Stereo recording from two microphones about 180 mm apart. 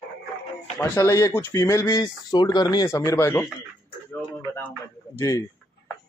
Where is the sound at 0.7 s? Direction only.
10° left (ahead or behind).